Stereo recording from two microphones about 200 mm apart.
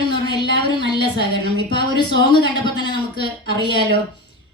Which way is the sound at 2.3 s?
20° left (ahead or behind).